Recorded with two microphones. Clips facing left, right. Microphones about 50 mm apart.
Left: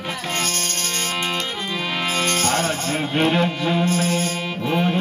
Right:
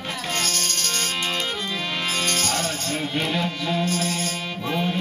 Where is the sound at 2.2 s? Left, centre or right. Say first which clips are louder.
Left 6 dB; left.